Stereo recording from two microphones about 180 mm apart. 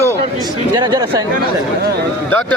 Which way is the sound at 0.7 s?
25° right (ahead or behind).